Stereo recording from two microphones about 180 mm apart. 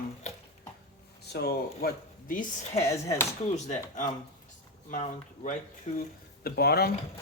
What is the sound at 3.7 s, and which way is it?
Speech, 45° left (ahead or behind).